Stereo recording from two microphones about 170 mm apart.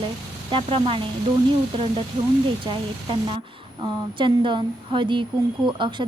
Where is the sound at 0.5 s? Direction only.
30° right (ahead or behind).